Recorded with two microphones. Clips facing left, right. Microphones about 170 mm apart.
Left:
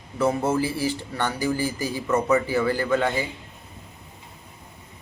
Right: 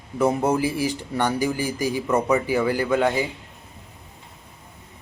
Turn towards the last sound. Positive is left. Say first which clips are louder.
# right 2 dB
turn(degrees=-10)  # may be behind; listen again after turning